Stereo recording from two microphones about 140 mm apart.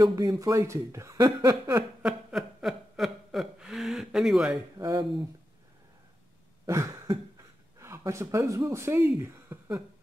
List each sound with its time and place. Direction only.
0.0 s speech: 25° right (ahead or behind)
1.8 s chuckle: 5° right (ahead or behind)
4.7 s speech: 25° right (ahead or behind)
6.6 s cough: 20° right (ahead or behind)
7.8 s speech: 20° right (ahead or behind)